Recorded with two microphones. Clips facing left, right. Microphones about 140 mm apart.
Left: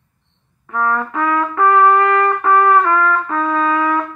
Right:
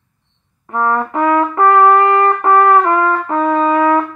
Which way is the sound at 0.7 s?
25° right (ahead or behind).